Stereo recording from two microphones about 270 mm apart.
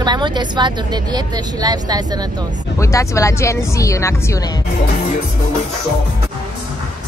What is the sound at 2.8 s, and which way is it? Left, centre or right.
Speech, centre.